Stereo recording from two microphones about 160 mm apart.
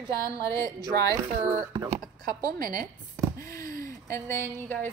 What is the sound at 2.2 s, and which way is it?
Speech, 60° right (ahead or behind).